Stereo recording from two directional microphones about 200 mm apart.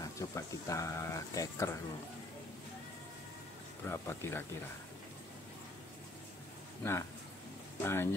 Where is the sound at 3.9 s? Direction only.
10° left (ahead or behind).